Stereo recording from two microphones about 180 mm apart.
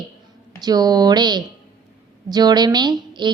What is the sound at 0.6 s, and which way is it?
A woman's voice, 20° right (ahead or behind).